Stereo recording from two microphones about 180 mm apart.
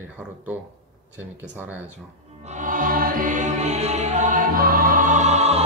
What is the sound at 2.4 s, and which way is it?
Music, 45° right (ahead or behind).